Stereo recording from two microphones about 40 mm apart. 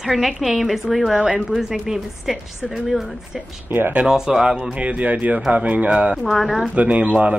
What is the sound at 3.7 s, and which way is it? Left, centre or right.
Speech, right.